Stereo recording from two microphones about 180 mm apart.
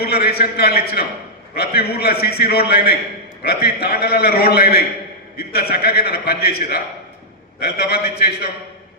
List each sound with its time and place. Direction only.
0.0 s a man's voice: 60° left (ahead or behind)